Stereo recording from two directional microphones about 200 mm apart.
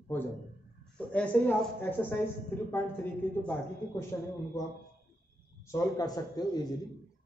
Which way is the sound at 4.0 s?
15° left (ahead or behind).